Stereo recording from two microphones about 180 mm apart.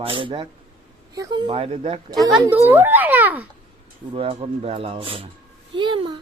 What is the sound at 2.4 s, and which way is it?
Speech, 10° right (ahead or behind).